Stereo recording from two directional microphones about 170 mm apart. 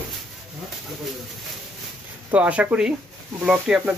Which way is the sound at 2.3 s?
10° right (ahead or behind).